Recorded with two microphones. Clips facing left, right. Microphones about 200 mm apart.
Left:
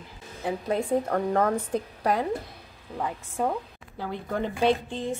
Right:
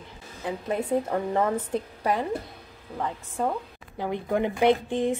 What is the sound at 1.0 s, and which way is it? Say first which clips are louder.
A woman's voice: left 1 dB; 5° right (ahead or behind).